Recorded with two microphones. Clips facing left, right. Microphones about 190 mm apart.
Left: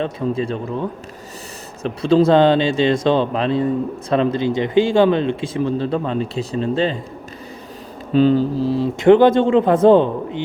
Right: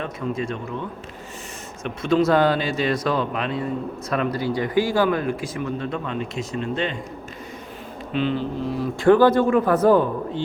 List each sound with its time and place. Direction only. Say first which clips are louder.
0.0 s speech: left 6 dB; 30° left (ahead or behind)
8.1 s speech: left 9 dB; 40° left (ahead or behind)